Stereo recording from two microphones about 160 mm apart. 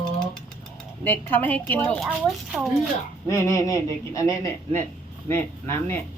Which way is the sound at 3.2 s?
15° left (ahead or behind).